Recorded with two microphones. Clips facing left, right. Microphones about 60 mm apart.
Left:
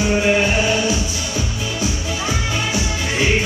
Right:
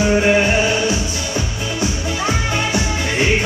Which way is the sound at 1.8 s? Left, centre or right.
Right.